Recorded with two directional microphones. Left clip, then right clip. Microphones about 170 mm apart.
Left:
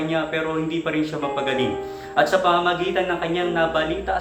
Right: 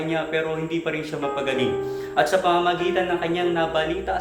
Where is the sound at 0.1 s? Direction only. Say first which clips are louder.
Right 1 dB; 15° right (ahead or behind).